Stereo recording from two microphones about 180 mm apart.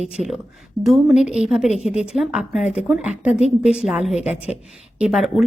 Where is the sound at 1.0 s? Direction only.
5° right (ahead or behind).